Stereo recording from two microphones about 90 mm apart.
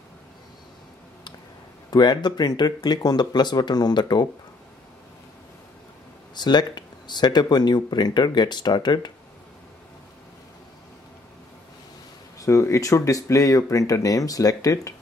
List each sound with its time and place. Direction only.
1.9 s speech: 50° left (ahead or behind)
6.3 s speech: 55° left (ahead or behind)
12.4 s speech: 35° left (ahead or behind)